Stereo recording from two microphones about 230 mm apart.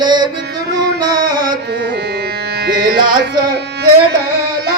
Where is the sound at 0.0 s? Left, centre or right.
Centre.